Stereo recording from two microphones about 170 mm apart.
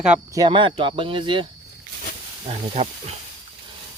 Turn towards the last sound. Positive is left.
turn(degrees=-35)  # may be behind; listen again after turning